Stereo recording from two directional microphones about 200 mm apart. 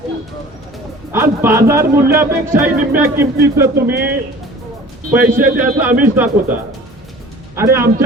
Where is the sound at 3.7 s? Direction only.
50° right (ahead or behind).